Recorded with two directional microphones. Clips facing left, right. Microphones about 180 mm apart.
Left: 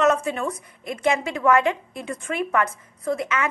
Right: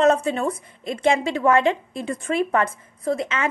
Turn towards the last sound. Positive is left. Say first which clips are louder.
# right 1 dB
turn(degrees=-30)  # may be behind; listen again after turning